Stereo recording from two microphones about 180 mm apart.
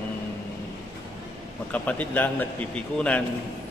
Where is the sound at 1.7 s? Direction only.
10° left (ahead or behind).